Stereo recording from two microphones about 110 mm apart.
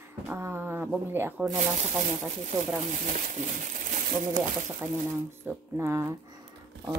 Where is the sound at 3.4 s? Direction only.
90° right.